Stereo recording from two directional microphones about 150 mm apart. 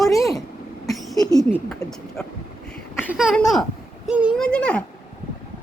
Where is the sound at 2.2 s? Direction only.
5° left (ahead or behind).